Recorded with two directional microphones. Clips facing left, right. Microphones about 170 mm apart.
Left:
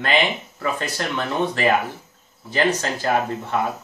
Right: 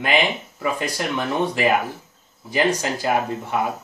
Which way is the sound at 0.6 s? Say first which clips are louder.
Right 1 dB; 10° right (ahead or behind).